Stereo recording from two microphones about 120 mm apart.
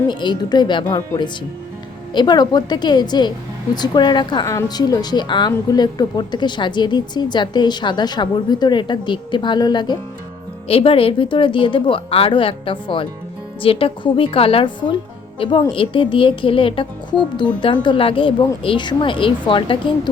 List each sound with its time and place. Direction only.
0.1 s a woman's voice: 40° left (ahead or behind)
2.1 s a woman's voice: 35° left (ahead or behind)
10.7 s a woman's voice: 50° left (ahead or behind)